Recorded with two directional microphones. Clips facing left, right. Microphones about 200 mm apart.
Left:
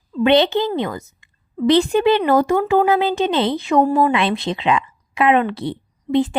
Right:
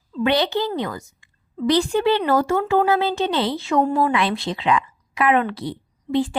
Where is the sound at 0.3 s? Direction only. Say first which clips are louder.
Left 5 dB; 25° left (ahead or behind).